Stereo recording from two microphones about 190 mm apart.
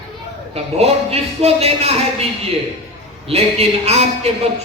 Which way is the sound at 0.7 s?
30° right (ahead or behind).